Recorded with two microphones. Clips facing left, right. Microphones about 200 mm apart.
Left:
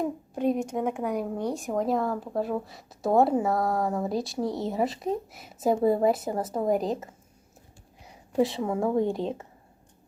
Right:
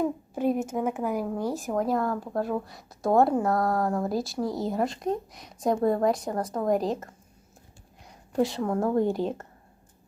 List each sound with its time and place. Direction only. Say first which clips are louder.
0.0 s a woman's voice: right 1 dB; 5° right (ahead or behind)